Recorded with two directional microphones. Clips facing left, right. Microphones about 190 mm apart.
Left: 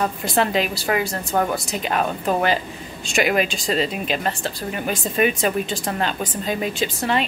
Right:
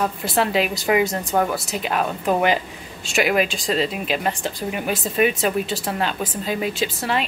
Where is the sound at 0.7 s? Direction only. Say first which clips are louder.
Right 3 dB; 15° right (ahead or behind).